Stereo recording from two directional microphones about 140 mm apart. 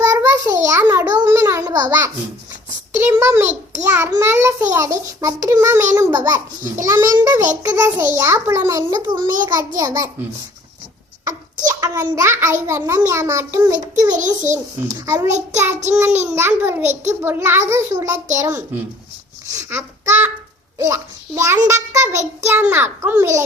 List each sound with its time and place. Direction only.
0.0 s a sound: 20° right (ahead or behind)
0.8 s babbling: 20° right (ahead or behind)
3.0 s a child's voice: 20° right (ahead or behind)
3.4 s a child's voice: 55° right (ahead or behind)
3.8 s a child's voice: 20° right (ahead or behind)
11.3 s a sound: 25° right (ahead or behind)
12.6 s a child's voice: 20° right (ahead or behind)
16.9 s child singing: 55° right (ahead or behind)
17.2 s a child's voice: 15° right (ahead or behind)